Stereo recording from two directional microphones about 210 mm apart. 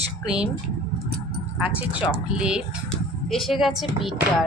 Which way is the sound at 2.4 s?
5° right (ahead or behind).